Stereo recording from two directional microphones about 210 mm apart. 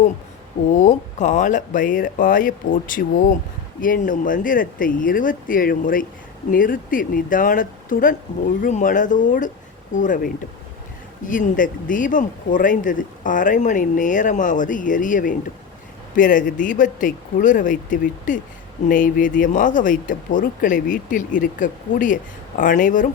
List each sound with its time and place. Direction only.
0.7 s speech: 35° left (ahead or behind)